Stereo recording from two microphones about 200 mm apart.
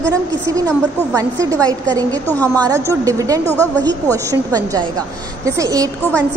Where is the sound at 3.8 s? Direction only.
15° right (ahead or behind).